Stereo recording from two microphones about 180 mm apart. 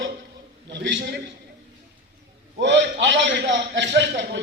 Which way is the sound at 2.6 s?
80° right.